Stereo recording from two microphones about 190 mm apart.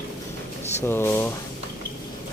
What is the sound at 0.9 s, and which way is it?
Speech, 10° left (ahead or behind).